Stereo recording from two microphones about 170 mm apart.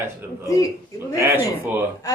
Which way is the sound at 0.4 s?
20° left (ahead or behind).